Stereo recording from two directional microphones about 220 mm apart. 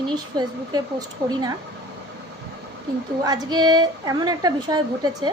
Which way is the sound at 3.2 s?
15° right (ahead or behind).